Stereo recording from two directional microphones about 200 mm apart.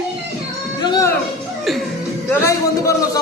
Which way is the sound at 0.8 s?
20° left (ahead or behind).